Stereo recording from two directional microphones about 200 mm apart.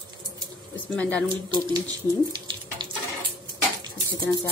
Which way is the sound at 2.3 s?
20° right (ahead or behind).